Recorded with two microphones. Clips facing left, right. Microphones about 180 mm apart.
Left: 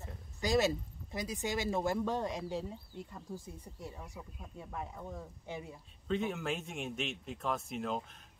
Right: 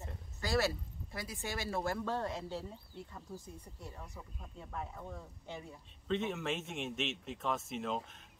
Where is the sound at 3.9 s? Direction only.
10° left (ahead or behind).